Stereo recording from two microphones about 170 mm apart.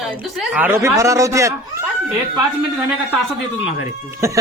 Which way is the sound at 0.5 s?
15° right (ahead or behind).